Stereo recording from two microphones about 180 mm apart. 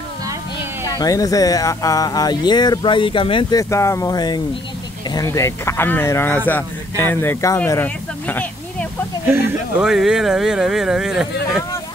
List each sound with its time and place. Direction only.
0.8 s speech: 20° left (ahead or behind)
9.2 s speech: 10° right (ahead or behind)
9.8 s speech: centre (ahead or behind)